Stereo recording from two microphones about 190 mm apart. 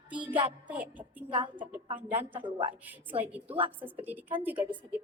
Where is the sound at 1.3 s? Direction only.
25° right (ahead or behind).